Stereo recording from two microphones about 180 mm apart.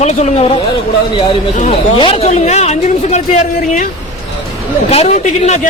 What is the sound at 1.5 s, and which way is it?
A man's voice, 40° left (ahead or behind).